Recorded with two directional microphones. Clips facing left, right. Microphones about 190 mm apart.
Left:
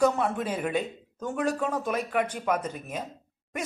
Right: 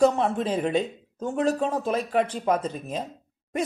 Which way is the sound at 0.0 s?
30° right (ahead or behind).